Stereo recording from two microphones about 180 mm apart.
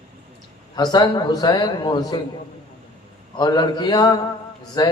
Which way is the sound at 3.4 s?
25° left (ahead or behind).